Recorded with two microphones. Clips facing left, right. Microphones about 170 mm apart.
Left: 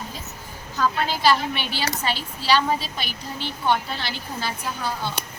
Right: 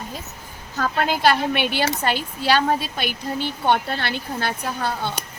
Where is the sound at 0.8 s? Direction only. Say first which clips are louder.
Right 2 dB; 55° right (ahead or behind).